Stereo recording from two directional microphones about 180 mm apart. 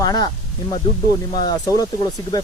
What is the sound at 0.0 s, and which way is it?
Speech, 25° left (ahead or behind).